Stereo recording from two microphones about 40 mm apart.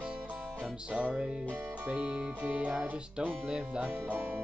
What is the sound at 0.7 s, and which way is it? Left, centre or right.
Music, right.